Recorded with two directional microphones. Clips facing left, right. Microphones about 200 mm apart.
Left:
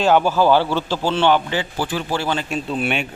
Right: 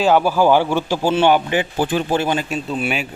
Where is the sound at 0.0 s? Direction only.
10° right (ahead or behind).